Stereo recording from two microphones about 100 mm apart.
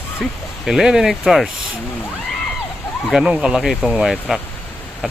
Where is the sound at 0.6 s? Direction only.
5° right (ahead or behind).